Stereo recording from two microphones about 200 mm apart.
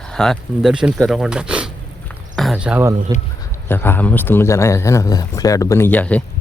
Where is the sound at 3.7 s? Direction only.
10° left (ahead or behind).